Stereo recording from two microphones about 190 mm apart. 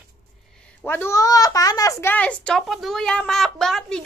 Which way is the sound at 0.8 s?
10° left (ahead or behind).